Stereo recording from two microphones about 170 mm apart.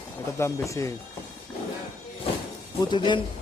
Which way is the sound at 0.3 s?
15° left (ahead or behind).